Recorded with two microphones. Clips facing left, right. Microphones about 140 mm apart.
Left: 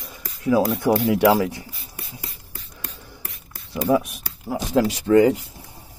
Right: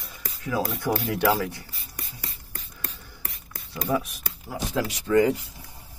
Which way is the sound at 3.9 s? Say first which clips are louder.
Left 7 dB; 20° left (ahead or behind).